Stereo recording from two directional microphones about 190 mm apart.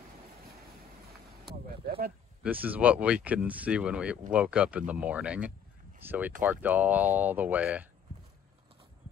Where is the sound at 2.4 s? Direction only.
10° right (ahead or behind).